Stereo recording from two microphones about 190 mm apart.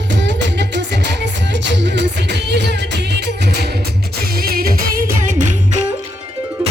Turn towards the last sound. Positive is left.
turn(degrees=-45)  # may be behind; listen again after turning